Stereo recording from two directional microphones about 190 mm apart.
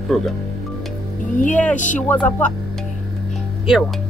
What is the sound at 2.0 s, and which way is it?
Speech, 10° left (ahead or behind).